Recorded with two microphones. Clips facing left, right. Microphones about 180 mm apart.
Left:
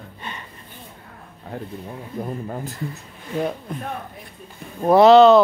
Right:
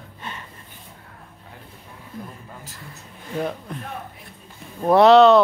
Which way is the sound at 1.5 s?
55° left (ahead or behind).